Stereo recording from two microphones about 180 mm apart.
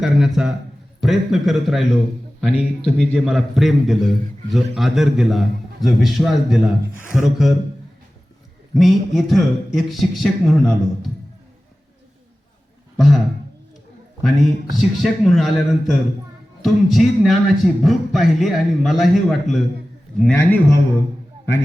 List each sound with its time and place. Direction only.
0.0 s a man's voice: centre (ahead or behind)
2.5 s speech: 35° left (ahead or behind)
3.0 s a man's voice: centre (ahead or behind)
8.7 s a man's voice: centre (ahead or behind)
13.0 s a man's voice: centre (ahead or behind)